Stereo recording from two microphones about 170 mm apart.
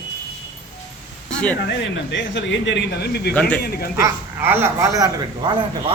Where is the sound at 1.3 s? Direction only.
5° left (ahead or behind).